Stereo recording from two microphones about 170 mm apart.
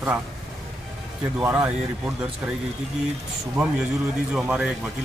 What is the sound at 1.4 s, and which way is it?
Speech, 15° right (ahead or behind).